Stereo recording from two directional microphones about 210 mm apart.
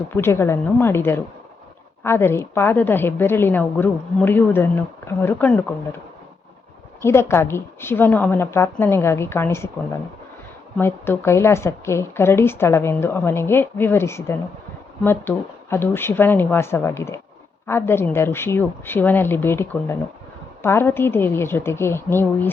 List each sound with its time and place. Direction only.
0.1 s a woman's voice: 10° left (ahead or behind)
7.0 s a woman's voice: 10° left (ahead or behind)
10.8 s a woman's voice: 10° left (ahead or behind)